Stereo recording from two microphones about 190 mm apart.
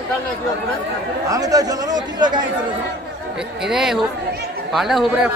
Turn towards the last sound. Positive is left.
turn(degrees=-5)  # may be behind; listen again after turning